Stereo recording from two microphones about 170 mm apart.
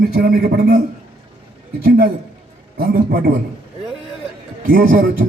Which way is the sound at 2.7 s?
60° right (ahead or behind).